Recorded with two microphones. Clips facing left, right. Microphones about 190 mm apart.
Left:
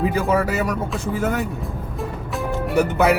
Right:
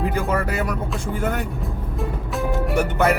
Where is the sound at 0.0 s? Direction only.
5° left (ahead or behind).